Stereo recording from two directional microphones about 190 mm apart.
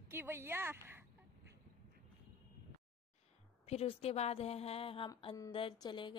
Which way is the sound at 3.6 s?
30° left (ahead or behind).